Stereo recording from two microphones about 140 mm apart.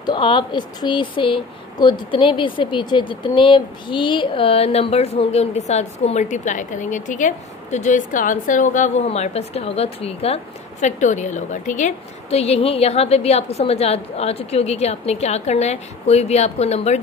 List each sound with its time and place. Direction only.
0.0 s speech: 35° left (ahead or behind); by 17.0 s 50° left (ahead or behind)